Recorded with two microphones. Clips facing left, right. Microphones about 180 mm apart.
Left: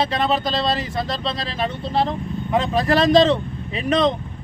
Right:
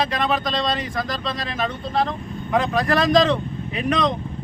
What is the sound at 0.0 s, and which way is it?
Speech, 25° left (ahead or behind).